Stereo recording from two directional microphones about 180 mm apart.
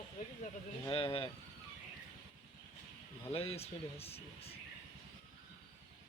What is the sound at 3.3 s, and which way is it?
Speech, 35° left (ahead or behind).